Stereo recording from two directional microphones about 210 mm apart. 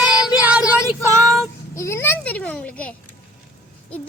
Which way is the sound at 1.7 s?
15° left (ahead or behind).